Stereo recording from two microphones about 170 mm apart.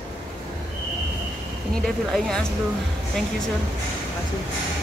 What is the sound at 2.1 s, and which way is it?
Speech, 5° left (ahead or behind).